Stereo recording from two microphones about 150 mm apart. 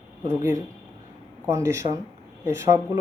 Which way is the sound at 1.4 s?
20° right (ahead or behind).